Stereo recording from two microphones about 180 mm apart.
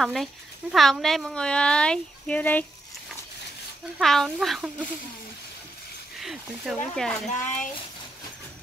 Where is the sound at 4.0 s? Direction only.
Centre (ahead or behind).